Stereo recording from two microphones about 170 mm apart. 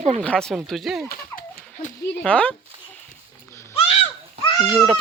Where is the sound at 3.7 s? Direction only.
35° left (ahead or behind).